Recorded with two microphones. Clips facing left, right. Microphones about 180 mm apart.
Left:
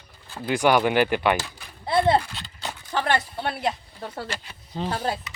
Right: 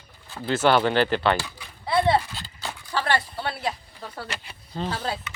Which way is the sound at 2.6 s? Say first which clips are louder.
Left 1 dB; 20° left (ahead or behind).